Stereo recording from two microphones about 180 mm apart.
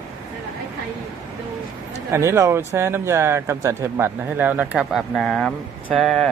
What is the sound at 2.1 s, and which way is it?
Speech, 15° right (ahead or behind).